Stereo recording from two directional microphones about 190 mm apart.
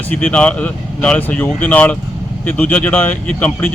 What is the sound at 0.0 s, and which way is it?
Speech, 10° left (ahead or behind).